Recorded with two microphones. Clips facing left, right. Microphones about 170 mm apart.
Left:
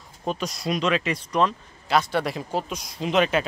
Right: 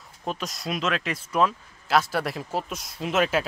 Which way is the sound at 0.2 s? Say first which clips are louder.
Left 3 dB; centre (ahead or behind).